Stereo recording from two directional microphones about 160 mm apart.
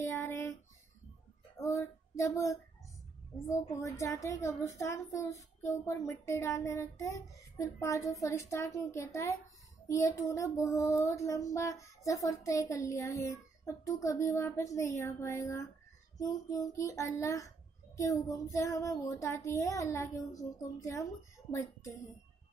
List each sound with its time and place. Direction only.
0.0 s music: 15° left (ahead or behind)
1.6 s a sound: 20° left (ahead or behind)
4.0 s female singing: 20° left (ahead or behind)